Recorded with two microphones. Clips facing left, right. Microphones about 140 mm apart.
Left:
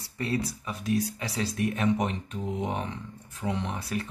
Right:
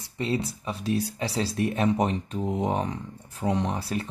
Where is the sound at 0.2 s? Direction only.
25° right (ahead or behind).